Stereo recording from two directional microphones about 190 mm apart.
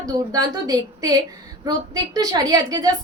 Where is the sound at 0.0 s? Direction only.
20° right (ahead or behind).